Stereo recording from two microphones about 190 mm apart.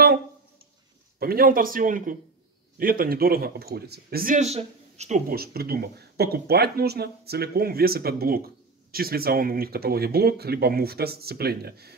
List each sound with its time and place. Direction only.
1.2 s speech: 50° right (ahead or behind); by 5.2 s 35° right (ahead or behind)
5.3 s speech: 55° right (ahead or behind)